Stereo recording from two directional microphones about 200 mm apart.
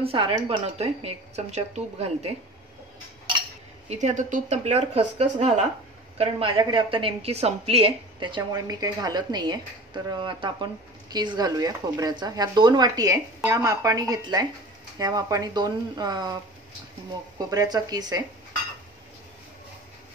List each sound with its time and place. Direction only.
0.0 s a woman's voice: 30° right (ahead or behind)
3.9 s a woman's voice: 35° right (ahead or behind); by 16.3 s 20° right (ahead or behind)
17.5 s a woman's voice: 20° right (ahead or behind)